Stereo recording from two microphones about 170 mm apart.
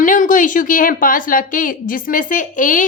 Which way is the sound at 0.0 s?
50° left (ahead or behind).